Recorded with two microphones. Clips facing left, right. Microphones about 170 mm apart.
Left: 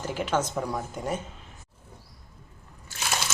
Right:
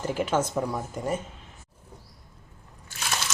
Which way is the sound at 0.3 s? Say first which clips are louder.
Left 1 dB; 5° right (ahead or behind).